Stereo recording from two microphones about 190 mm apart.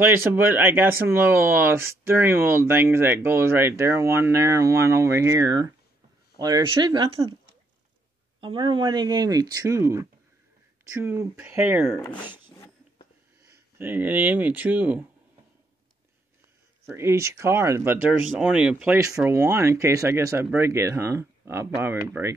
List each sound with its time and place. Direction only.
0.0 s speech: 10° right (ahead or behind)
8.4 s speech: 25° right (ahead or behind); by 12.0 s 10° right (ahead or behind)
13.4 s speech: 10° right (ahead or behind)
16.9 s speech: 15° right (ahead or behind)
18.9 s speech: 15° right (ahead or behind)